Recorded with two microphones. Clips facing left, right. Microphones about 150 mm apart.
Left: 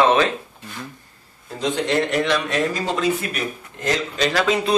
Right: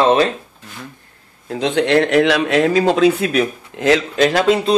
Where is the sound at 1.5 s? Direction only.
70° right (ahead or behind).